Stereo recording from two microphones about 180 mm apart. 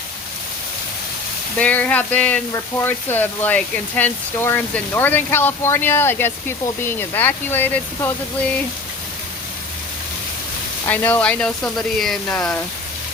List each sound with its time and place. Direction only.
1.5 s speech: 5° left (ahead or behind)
10.8 s speech: 10° left (ahead or behind)